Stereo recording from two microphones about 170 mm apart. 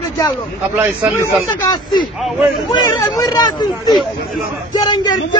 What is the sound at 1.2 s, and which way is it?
Speech, 25° left (ahead or behind).